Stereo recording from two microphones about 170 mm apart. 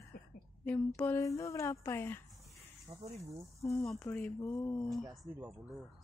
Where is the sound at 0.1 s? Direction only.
60° left (ahead or behind).